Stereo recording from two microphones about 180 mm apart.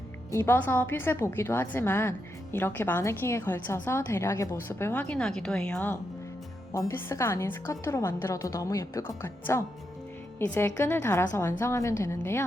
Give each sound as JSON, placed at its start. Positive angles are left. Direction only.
{"t": 0.3, "sound": "a woman's voice", "side_deg": 15}